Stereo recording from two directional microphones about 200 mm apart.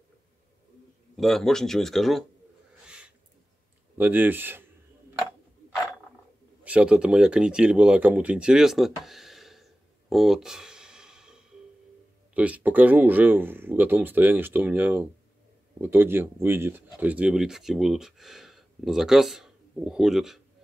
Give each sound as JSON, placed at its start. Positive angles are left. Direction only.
{"t": 1.1, "sound": "speech", "side_deg": 0}
{"t": 4.0, "sound": "speech", "side_deg": -10}
{"t": 6.6, "sound": "speech", "side_deg": -5}